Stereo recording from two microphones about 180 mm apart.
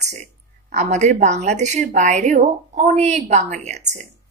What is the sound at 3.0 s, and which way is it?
Speech, 40° right (ahead or behind).